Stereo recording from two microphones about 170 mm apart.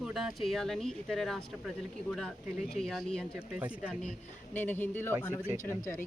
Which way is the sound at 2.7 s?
Centre (ahead or behind).